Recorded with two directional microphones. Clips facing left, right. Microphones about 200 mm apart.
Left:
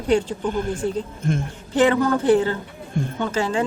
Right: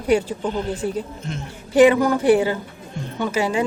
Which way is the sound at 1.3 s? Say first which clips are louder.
Left 7 dB; 50° left (ahead or behind).